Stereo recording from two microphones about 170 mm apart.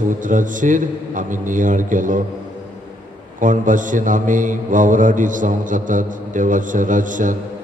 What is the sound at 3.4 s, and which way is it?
Mantra, 50° right (ahead or behind).